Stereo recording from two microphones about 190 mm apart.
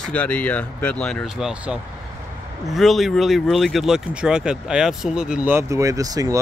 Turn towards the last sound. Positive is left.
turn(degrees=-20)  # may be behind; listen again after turning